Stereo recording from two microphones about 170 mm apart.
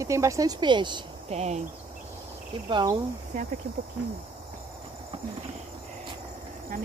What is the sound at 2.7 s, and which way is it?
Speech, 20° right (ahead or behind).